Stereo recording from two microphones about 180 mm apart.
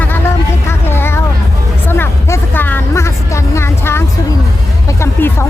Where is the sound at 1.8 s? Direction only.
10° left (ahead or behind).